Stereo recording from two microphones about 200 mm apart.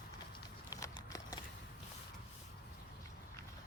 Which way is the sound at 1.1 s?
15° left (ahead or behind).